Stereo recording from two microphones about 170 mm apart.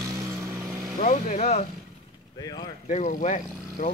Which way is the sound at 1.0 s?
45° left (ahead or behind).